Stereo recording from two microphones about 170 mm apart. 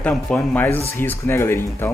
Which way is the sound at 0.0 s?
5° left (ahead or behind).